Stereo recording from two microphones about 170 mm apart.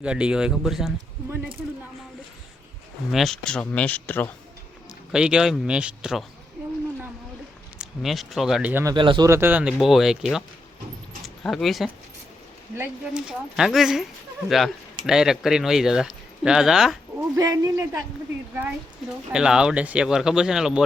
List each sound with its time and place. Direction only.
0.0 s speech: 5° right (ahead or behind)
3.1 s speech: centre (ahead or behind)
5.1 s speech: 5° right (ahead or behind)
7.8 s speech: centre (ahead or behind)
8.8 s speech: 25° right (ahead or behind); by 10.4 s centre (ahead or behind)
11.2 s keys jangling: centre (ahead or behind)
12.7 s speech: 10° right (ahead or behind)
17.2 s speech: 20° right (ahead or behind)
19.3 s speech: 5° right (ahead or behind)